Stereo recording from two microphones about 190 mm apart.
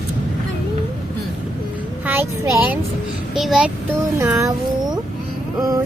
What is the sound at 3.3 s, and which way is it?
Child singing, 5° right (ahead or behind).